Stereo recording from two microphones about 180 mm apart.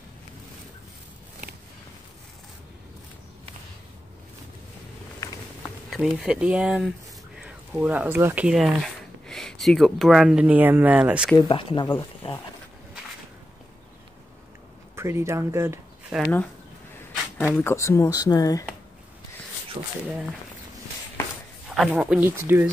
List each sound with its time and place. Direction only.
5.9 s speech: centre (ahead or behind)
11.3 s speech: 25° left (ahead or behind)
15.0 s speech: 15° right (ahead or behind)
17.6 s speech: 15° left (ahead or behind)
19.8 s speech: 30° right (ahead or behind)
21.6 s speech: 5° right (ahead or behind)